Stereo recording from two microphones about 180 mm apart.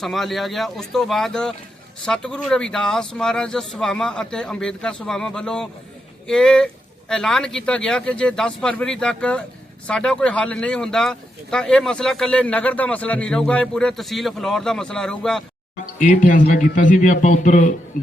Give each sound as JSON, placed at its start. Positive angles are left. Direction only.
{"t": 0.0, "sound": "speech", "side_deg": 0}
{"t": 16.0, "sound": "a man's voice", "side_deg": 45}